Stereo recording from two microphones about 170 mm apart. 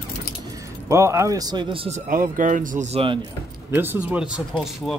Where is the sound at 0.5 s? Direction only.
15° right (ahead or behind); by 2.0 s 35° right (ahead or behind).